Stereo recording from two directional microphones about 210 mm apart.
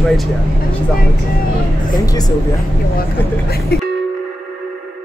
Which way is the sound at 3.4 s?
50° left (ahead or behind).